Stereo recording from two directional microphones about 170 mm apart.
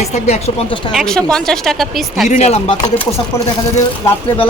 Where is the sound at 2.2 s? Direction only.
40° left (ahead or behind).